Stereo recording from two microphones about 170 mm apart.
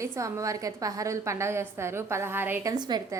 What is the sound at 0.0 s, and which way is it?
A woman's voice, 20° right (ahead or behind).